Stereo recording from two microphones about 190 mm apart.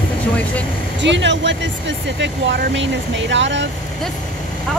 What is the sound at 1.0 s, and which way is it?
Speech, 70° right (ahead or behind).